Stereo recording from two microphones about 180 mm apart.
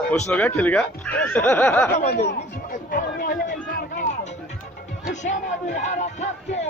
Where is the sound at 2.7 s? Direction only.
50° left (ahead or behind).